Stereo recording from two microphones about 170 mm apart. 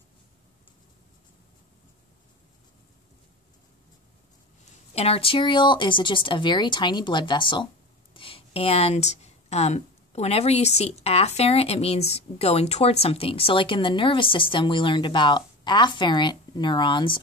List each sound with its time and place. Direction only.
4.9 s a woman's voice: 35° left (ahead or behind)